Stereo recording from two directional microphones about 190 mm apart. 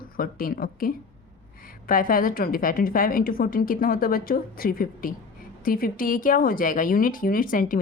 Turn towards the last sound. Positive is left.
turn(degrees=45)  # may be behind; listen again after turning